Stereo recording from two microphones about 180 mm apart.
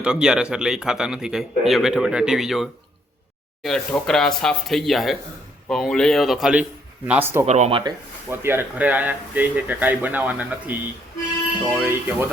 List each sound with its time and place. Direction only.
0.0 s a man's voice: 5° right (ahead or behind)
7.4 s speech: 40° right (ahead or behind)
8.3 s speech: 10° right (ahead or behind)